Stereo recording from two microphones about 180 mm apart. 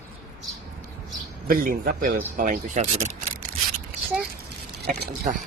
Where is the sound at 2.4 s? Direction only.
40° right (ahead or behind).